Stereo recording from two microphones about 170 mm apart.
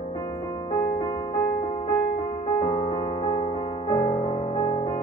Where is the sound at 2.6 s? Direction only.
40° left (ahead or behind).